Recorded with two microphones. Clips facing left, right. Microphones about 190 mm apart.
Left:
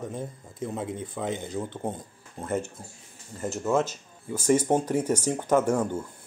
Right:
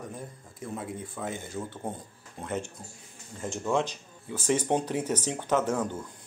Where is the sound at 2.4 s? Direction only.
5° left (ahead or behind).